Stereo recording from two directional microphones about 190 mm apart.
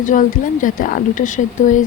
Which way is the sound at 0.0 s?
45° left (ahead or behind).